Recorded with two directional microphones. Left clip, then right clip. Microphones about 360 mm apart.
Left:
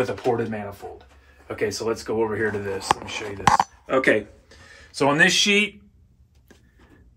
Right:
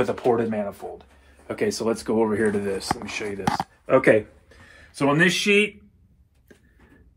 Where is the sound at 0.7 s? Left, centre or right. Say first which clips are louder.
Right 3 dB; right.